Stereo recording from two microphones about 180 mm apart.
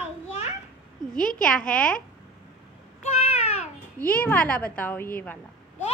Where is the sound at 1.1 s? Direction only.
5° left (ahead or behind).